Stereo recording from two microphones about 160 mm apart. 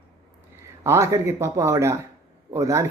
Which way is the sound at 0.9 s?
15° right (ahead or behind).